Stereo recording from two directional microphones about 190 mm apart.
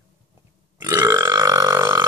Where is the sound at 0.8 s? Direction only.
15° right (ahead or behind).